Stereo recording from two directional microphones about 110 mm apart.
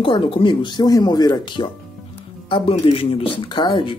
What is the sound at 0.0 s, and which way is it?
Speech, 55° left (ahead or behind).